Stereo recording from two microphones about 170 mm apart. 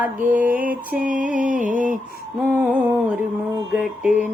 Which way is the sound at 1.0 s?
50° right (ahead or behind).